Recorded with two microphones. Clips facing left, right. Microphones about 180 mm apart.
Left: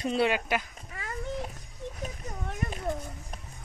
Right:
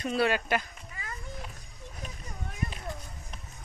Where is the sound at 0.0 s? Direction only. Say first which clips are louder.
Left 1 dB; 25° left (ahead or behind).